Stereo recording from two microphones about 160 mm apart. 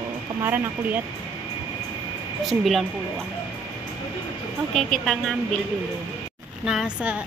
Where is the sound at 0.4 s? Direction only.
10° right (ahead or behind).